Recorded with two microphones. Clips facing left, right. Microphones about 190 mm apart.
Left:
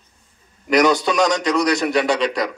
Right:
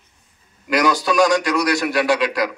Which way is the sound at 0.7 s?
25° left (ahead or behind).